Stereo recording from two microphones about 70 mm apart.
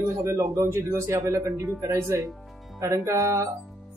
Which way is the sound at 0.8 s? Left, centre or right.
Right.